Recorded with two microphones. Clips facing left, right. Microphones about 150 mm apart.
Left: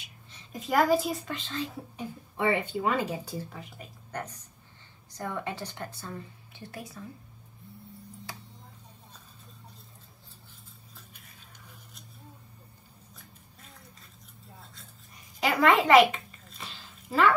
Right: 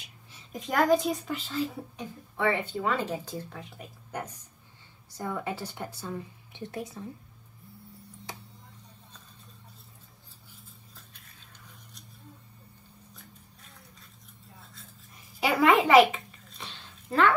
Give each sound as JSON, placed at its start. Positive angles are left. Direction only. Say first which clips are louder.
{"t": 0.3, "sound": "speech", "louder": "left 2 dB", "side_deg": 0}
{"t": 2.0, "sound": "a woman's voice", "louder": "left 2 dB", "side_deg": 15}
{"t": 8.3, "sound": "tick-tock", "louder": "right 3 dB", "side_deg": -20}
{"t": 14.6, "sound": "toothbrush", "louder": "even", "side_deg": 0}